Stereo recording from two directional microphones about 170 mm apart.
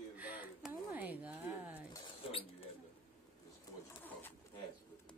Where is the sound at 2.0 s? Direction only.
30° left (ahead or behind).